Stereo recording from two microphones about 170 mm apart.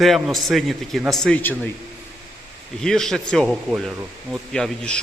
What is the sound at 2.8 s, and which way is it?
A man's voice, 5° left (ahead or behind).